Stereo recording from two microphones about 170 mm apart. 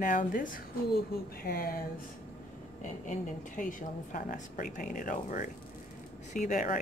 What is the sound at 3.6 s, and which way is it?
Speech, 50° left (ahead or behind).